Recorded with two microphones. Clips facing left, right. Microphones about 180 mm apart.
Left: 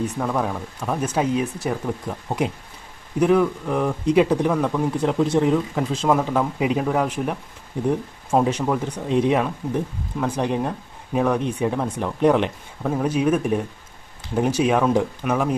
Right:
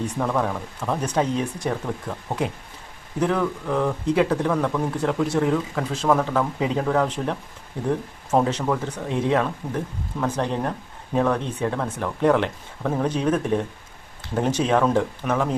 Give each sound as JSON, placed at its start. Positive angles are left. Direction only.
{"t": 0.2, "sound": "speech", "side_deg": 5}